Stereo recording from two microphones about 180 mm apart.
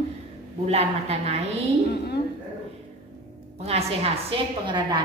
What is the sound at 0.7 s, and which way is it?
Speech, 35° right (ahead or behind).